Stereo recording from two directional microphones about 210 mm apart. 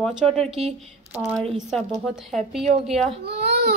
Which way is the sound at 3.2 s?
50° right (ahead or behind).